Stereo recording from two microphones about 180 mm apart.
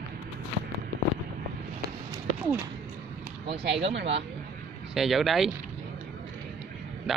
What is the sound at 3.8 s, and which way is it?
Speech, 75° right (ahead or behind).